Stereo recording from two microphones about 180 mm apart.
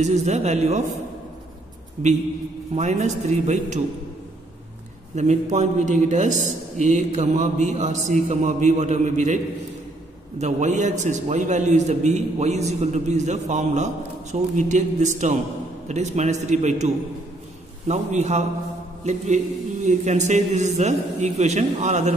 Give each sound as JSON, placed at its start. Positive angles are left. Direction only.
{"t": 0.0, "sound": "a man's voice", "side_deg": -40}
{"t": 2.0, "sound": "a man's voice", "side_deg": -35}
{"t": 5.1, "sound": "a man's voice", "side_deg": -40}
{"t": 10.4, "sound": "a man's voice", "side_deg": -40}